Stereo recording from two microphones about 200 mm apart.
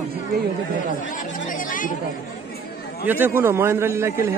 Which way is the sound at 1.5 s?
40° left (ahead or behind).